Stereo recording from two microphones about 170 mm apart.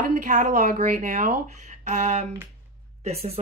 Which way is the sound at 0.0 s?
50° right (ahead or behind).